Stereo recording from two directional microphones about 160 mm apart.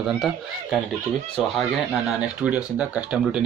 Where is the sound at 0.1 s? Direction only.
Centre (ahead or behind).